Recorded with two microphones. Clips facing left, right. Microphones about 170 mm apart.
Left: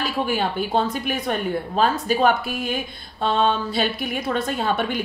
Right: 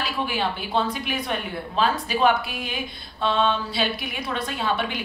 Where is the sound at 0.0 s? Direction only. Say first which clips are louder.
Left 3 dB; 45° left (ahead or behind).